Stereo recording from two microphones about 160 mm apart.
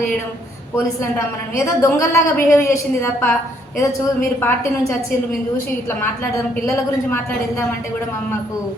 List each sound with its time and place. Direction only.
1.1 s a woman's voice: 20° left (ahead or behind)